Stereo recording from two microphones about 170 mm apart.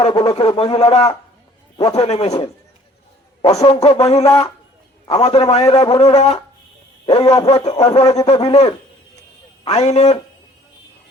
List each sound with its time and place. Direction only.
0.0 s speech: 30° left (ahead or behind)